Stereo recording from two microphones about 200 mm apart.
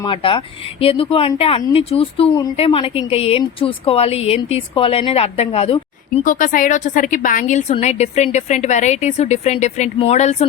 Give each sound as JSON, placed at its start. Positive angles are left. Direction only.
{"t": 0.0, "sound": "a woman's voice", "side_deg": 25}